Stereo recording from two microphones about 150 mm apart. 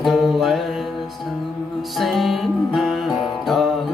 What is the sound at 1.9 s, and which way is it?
Music, centre (ahead or behind).